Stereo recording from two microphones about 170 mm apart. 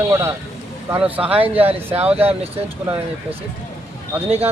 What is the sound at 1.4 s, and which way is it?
Speech, 35° right (ahead or behind).